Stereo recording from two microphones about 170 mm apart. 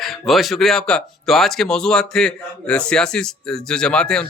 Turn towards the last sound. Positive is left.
turn(degrees=5)  # may be behind; listen again after turning